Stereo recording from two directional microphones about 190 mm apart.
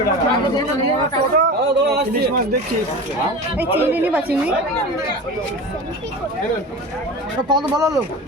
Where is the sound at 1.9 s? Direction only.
55° right (ahead or behind).